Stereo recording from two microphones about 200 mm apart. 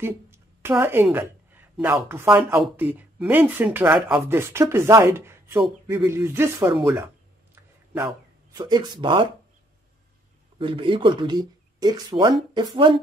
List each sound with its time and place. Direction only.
0.0 s a woman's voice: 10° right (ahead or behind)
7.9 s speech: 15° right (ahead or behind)
10.6 s speech: 25° right (ahead or behind)